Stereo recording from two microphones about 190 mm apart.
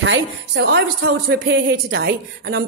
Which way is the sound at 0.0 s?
90° right.